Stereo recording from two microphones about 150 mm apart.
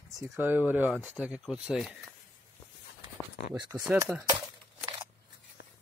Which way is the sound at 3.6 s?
25° right (ahead or behind).